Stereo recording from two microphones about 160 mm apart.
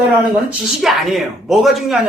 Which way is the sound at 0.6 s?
Centre (ahead or behind).